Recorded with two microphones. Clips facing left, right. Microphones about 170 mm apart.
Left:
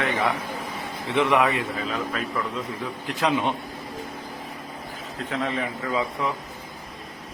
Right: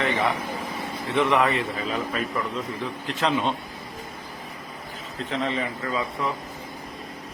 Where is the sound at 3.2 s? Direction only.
15° left (ahead or behind).